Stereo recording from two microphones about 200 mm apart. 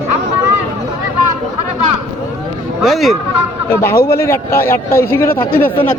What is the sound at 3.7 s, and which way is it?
A man's voice, 15° left (ahead or behind).